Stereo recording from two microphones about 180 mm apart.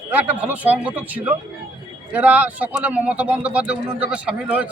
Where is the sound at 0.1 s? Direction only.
10° right (ahead or behind).